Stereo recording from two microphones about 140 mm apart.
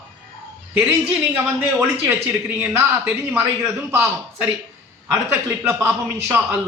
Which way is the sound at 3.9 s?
20° right (ahead or behind).